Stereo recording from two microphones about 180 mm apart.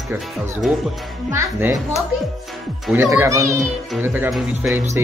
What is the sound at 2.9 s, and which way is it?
Speech, 15° right (ahead or behind).